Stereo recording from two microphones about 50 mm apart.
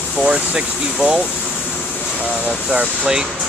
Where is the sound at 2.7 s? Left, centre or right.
Centre.